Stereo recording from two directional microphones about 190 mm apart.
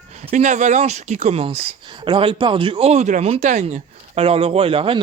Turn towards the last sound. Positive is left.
turn(degrees=-30)  # may be behind; listen again after turning